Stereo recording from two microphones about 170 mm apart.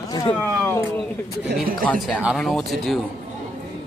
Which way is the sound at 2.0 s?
5° right (ahead or behind).